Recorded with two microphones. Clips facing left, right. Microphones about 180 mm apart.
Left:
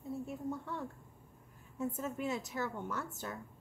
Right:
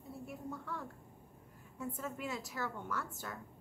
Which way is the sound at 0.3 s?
25° left (ahead or behind).